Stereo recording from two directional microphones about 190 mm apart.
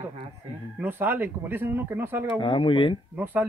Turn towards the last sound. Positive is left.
turn(degrees=-10)  # may be behind; listen again after turning